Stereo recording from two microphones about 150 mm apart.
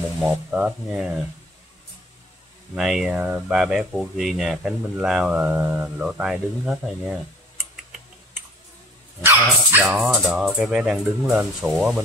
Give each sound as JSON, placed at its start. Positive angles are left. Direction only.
{"t": 0.2, "sound": "speech", "side_deg": -5}
{"t": 2.7, "sound": "speech", "side_deg": -5}
{"t": 9.2, "sound": "speech", "side_deg": -20}
{"t": 9.8, "sound": "speech", "side_deg": -10}